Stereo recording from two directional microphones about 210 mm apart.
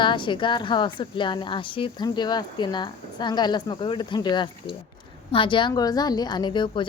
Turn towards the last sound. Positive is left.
turn(degrees=25)  # may be behind; listen again after turning